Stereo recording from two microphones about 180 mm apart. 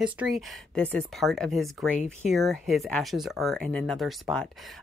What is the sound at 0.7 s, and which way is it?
Speech, 5° left (ahead or behind).